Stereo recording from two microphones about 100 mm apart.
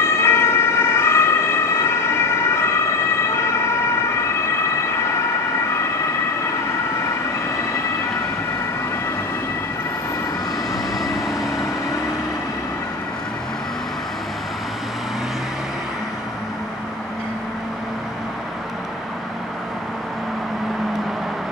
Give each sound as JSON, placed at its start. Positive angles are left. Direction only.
{"t": 0.0, "sound": "emergency vehicle", "side_deg": 25}